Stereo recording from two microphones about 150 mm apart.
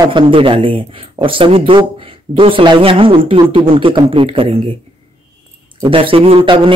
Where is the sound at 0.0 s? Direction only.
35° right (ahead or behind).